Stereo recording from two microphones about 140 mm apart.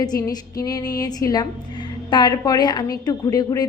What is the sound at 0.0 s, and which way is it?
A woman's voice, 30° left (ahead or behind).